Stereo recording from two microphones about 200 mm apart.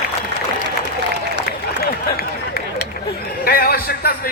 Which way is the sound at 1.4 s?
50° left (ahead or behind).